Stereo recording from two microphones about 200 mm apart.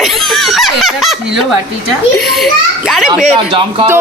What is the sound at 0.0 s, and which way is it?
Snicker, centre (ahead or behind).